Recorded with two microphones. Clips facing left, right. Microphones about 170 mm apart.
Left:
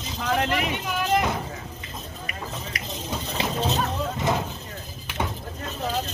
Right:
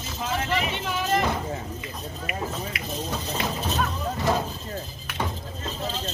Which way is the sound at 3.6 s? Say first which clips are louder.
Left 2 dB; 20° left (ahead or behind).